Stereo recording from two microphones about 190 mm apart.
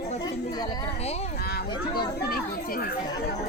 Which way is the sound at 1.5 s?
55° left (ahead or behind).